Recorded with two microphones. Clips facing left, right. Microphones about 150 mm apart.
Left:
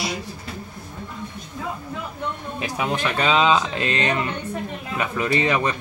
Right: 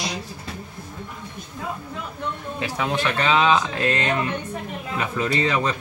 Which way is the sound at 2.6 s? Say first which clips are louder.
Even; 15° left (ahead or behind).